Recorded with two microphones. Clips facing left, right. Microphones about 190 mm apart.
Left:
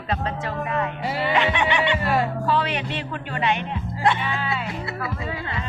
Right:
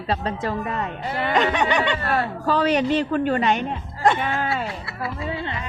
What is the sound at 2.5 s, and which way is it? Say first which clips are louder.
Speech: right 5 dB; 40° right (ahead or behind).